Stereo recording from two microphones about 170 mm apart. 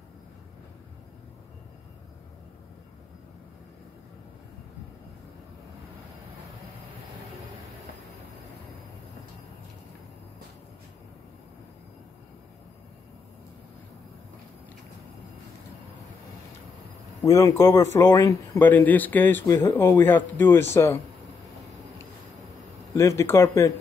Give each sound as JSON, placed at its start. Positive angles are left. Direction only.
{"t": 17.2, "sound": "speech", "side_deg": 20}
{"t": 22.9, "sound": "speech", "side_deg": 15}